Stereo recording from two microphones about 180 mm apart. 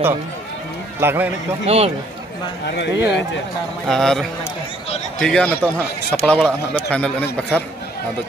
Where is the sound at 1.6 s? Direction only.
35° right (ahead or behind).